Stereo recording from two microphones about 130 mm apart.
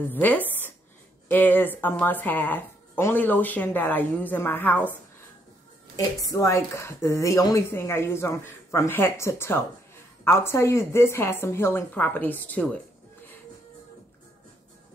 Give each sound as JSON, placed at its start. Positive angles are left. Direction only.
{"t": 0.1, "sound": "speech", "side_deg": 15}
{"t": 5.9, "sound": "a woman's voice", "side_deg": 25}